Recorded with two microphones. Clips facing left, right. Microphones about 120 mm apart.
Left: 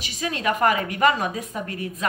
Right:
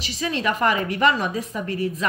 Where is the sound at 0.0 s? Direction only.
50° left (ahead or behind).